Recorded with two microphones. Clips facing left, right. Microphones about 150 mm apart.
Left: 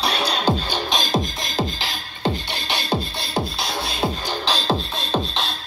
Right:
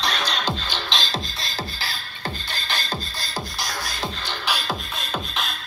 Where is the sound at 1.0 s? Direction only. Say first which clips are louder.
Left 7 dB; 15° left (ahead or behind).